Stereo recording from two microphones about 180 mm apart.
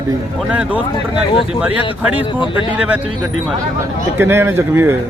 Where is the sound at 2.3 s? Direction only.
25° left (ahead or behind).